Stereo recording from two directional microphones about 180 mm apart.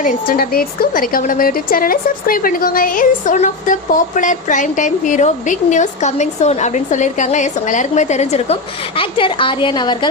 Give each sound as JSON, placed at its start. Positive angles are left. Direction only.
{"t": 0.0, "sound": "a woman's voice", "side_deg": 50}